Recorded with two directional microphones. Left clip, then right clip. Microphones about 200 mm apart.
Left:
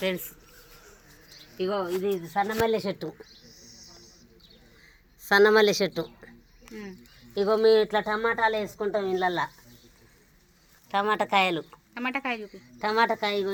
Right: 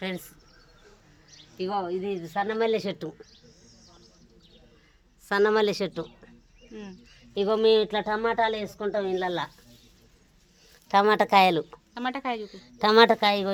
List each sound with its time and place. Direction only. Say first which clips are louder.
1.5 s speech: left 1 dB; 15° right (ahead or behind)
3.5 s a sound: left 6 dB; 20° right (ahead or behind)
3.8 s bird: left 4 dB; 5° right (ahead or behind)
5.2 s speech: left 4 dB; 15° left (ahead or behind)
7.3 s speech: left 1 dB; 15° right (ahead or behind)
8.8 s speech: left 1 dB; 5° right (ahead or behind)
10.8 s speech: right 5 dB; 55° right (ahead or behind)
11.9 s speech: even; centre (ahead or behind)
12.4 s speech: right 5 dB; 55° right (ahead or behind)